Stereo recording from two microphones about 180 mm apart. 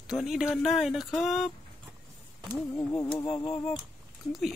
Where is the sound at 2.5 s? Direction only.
15° left (ahead or behind).